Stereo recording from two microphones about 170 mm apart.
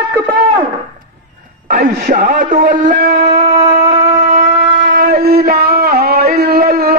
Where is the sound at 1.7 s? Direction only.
55° right (ahead or behind).